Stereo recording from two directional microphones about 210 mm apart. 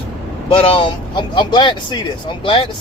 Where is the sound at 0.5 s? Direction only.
25° left (ahead or behind).